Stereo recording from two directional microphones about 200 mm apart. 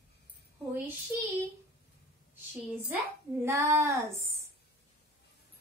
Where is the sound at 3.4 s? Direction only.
15° right (ahead or behind).